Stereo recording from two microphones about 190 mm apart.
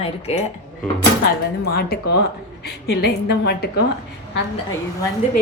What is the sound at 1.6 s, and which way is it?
A woman's voice, 55° left (ahead or behind).